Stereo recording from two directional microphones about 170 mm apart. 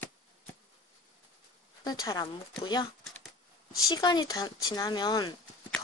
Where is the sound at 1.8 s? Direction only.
20° left (ahead or behind).